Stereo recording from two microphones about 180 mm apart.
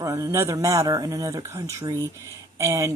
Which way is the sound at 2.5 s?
15° right (ahead or behind).